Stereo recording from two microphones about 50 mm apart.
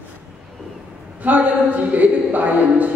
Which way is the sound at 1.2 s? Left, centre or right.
Right.